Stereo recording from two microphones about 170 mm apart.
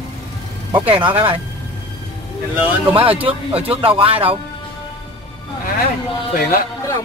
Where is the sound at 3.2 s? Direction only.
35° right (ahead or behind).